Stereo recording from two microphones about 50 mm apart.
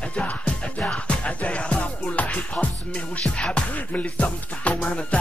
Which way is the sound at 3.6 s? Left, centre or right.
Left.